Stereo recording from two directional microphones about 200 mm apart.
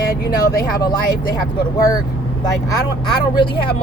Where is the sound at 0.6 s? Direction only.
20° left (ahead or behind).